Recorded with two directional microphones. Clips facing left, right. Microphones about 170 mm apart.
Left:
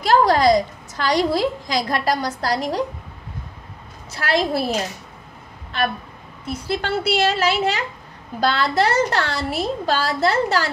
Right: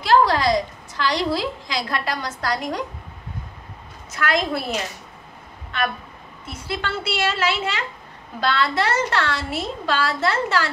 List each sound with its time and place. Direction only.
0.0 s a woman's voice: 45° left (ahead or behind)
4.1 s a woman's voice: 35° left (ahead or behind)
6.4 s a woman's voice: 40° left (ahead or behind)